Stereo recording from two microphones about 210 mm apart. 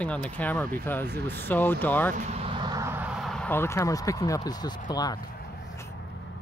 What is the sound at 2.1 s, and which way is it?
Speech, 30° right (ahead or behind).